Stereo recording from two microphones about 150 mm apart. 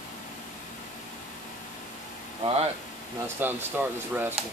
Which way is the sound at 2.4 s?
45° right (ahead or behind).